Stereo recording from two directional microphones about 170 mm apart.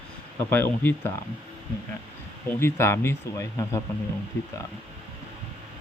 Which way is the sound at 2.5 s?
15° left (ahead or behind).